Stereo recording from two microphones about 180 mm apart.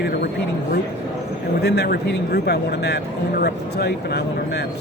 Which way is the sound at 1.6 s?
65° left (ahead or behind).